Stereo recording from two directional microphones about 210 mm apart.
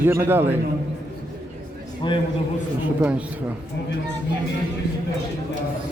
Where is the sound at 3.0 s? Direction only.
5° right (ahead or behind).